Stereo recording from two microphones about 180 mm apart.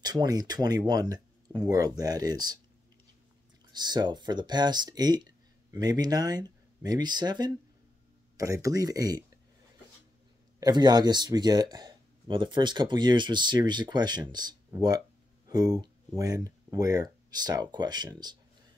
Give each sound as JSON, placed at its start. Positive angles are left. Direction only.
{"t": 0.0, "sound": "speech", "side_deg": -20}
{"t": 3.7, "sound": "speech", "side_deg": -25}
{"t": 10.6, "sound": "speech", "side_deg": -25}